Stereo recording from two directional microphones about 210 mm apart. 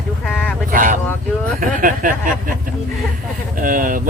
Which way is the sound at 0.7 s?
40° right (ahead or behind).